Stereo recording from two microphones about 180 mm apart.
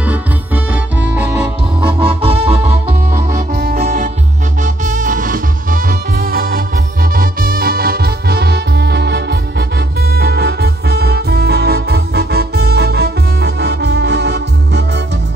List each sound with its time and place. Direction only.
1.1 s music: 10° right (ahead or behind)
1.9 s music: 30° right (ahead or behind)
3.1 s music: 50° right (ahead or behind)
3.8 s music: 45° right (ahead or behind); by 14.9 s 65° right (ahead or behind)